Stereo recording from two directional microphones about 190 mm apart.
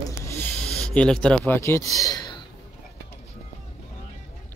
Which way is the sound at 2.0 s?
20° left (ahead or behind).